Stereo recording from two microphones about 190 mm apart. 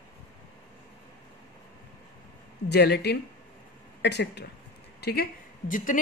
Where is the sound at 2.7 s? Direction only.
60° left (ahead or behind).